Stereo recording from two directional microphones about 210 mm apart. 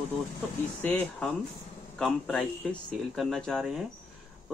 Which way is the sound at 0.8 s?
10° left (ahead or behind).